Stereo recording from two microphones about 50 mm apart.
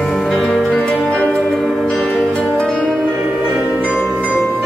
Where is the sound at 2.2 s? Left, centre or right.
Centre.